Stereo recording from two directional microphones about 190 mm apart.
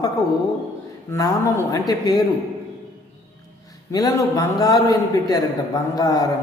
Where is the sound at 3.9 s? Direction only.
20° left (ahead or behind).